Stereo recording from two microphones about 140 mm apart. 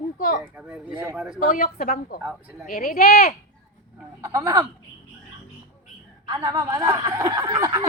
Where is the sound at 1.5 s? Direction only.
90° left.